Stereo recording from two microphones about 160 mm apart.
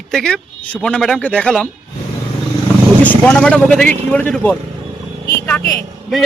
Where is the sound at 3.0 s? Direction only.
10° left (ahead or behind).